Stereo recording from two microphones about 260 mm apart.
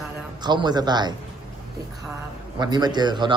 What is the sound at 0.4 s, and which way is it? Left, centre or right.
Speech, centre.